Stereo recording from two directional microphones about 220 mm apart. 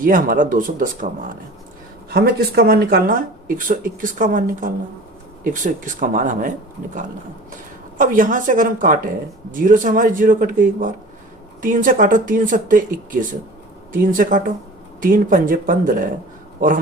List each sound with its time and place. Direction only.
0.0 s speech: 40° right (ahead or behind)
7.9 s speech: 40° right (ahead or behind)